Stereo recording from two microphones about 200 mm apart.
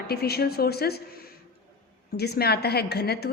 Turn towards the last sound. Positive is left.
turn(degrees=55)  # may be behind; listen again after turning